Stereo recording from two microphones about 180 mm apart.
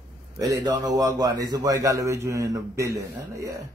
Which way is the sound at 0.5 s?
20° right (ahead or behind).